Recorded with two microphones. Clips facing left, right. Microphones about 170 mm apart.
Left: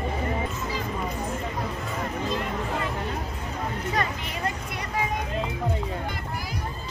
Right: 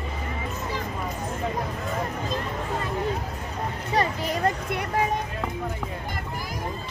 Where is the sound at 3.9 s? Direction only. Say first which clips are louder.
Right 9 dB; 40° right (ahead or behind).